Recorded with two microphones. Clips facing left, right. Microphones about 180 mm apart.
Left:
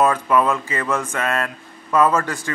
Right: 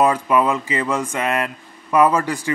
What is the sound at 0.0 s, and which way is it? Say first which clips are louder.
Speech: right 1 dB; 15° right (ahead or behind).